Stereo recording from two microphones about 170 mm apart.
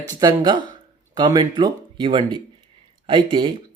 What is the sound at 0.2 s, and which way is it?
Speech, 25° right (ahead or behind).